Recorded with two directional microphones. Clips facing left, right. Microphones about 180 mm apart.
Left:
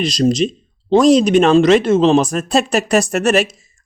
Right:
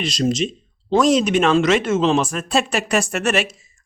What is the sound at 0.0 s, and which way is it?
Speech, 35° left (ahead or behind).